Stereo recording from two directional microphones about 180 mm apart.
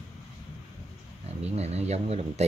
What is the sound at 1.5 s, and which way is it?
Speech, 35° right (ahead or behind).